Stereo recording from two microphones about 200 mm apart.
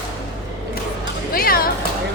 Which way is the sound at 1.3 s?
45° left (ahead or behind).